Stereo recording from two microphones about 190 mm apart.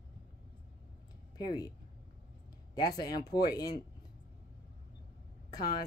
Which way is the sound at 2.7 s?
20° left (ahead or behind).